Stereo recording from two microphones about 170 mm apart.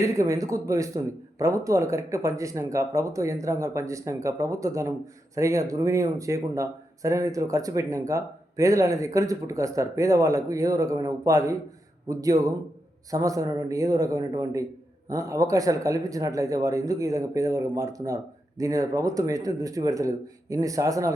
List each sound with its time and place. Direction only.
0.0 s speech: 20° right (ahead or behind)